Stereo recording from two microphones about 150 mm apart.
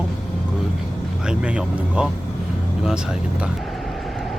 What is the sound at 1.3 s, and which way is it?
Speech, 5° right (ahead or behind).